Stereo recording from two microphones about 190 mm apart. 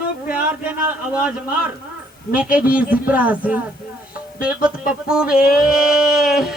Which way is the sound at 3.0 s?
10° right (ahead or behind).